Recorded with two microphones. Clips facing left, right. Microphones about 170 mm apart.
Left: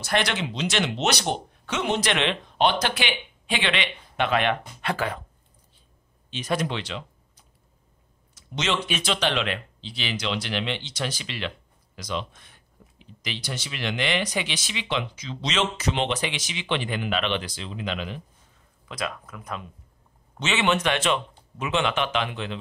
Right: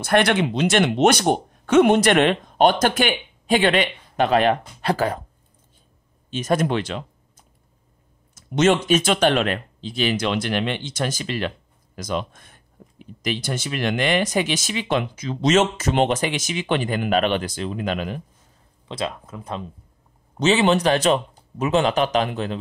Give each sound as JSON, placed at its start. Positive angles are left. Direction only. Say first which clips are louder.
{"t": 0.0, "sound": "speech", "louder": "right 8 dB", "side_deg": -55}
{"t": 6.3, "sound": "speech", "louder": "right 6 dB", "side_deg": -45}
{"t": 18.9, "sound": "speech", "louder": "right 4 dB", "side_deg": -25}